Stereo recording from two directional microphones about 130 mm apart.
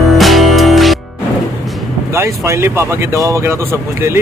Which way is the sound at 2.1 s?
20° right (ahead or behind).